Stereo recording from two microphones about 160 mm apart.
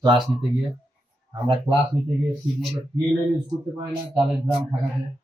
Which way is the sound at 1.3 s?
30° right (ahead or behind).